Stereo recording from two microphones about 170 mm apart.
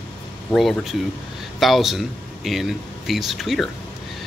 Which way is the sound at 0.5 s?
Centre (ahead or behind).